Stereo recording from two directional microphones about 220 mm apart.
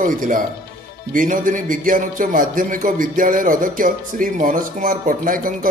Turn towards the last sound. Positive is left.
turn(degrees=-40)  # may be behind; listen again after turning